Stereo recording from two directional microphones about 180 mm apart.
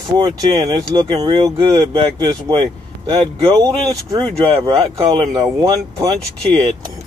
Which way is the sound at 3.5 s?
20° right (ahead or behind).